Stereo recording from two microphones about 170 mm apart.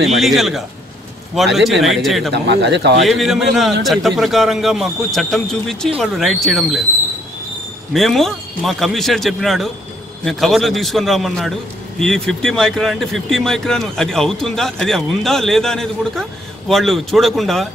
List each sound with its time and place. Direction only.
0.0 s speech: centre (ahead or behind)
2.3 s speech: 90° right
3.1 s speech: centre (ahead or behind)
7.9 s speech: centre (ahead or behind)